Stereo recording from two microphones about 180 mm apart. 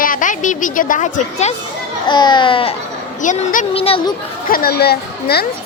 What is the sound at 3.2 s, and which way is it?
Speech, 45° left (ahead or behind).